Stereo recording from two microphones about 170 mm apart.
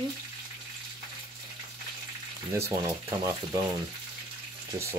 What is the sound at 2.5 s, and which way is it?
Speech, 15° right (ahead or behind).